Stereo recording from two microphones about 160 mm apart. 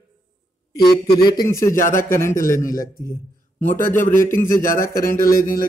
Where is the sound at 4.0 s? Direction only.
55° left (ahead or behind).